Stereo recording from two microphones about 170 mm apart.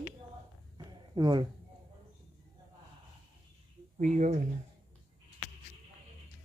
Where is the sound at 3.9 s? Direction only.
50° right (ahead or behind).